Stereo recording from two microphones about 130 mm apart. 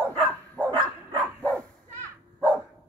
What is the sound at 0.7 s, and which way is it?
Dog, 35° right (ahead or behind).